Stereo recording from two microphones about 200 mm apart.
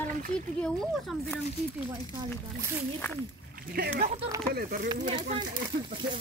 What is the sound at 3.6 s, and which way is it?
Speech, 50° right (ahead or behind).